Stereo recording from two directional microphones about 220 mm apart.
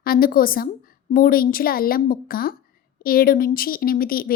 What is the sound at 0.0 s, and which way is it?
A woman's voice, 40° left (ahead or behind).